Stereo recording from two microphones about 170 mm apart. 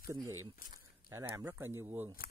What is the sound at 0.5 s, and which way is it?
Speech, 55° left (ahead or behind).